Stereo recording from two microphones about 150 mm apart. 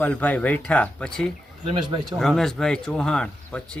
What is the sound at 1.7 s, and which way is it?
Speech, 30° right (ahead or behind).